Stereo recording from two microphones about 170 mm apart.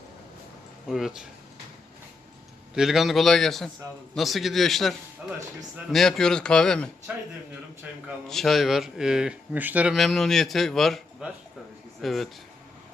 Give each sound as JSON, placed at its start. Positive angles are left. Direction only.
{"t": 0.9, "sound": "speech", "side_deg": 0}
{"t": 2.7, "sound": "speech", "side_deg": 0}
{"t": 7.1, "sound": "speech", "side_deg": -10}
{"t": 8.0, "sound": "speech", "side_deg": 0}